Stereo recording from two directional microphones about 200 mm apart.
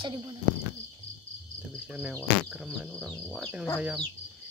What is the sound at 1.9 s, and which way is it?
Speech, 5° right (ahead or behind).